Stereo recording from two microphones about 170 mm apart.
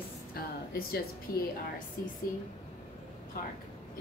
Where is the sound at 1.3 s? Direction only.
60° left (ahead or behind).